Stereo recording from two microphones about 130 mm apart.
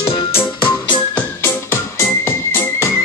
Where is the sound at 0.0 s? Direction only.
40° left (ahead or behind).